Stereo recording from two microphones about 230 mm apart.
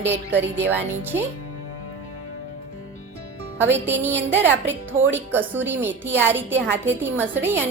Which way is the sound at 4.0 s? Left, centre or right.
Centre.